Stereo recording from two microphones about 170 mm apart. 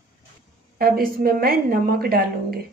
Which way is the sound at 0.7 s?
60° right (ahead or behind).